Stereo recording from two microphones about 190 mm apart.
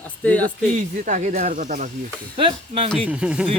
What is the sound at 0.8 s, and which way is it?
Speech, 40° right (ahead or behind).